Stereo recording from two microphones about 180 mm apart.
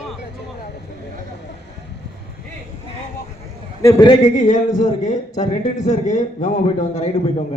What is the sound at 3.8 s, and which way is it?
Speech, 25° left (ahead or behind).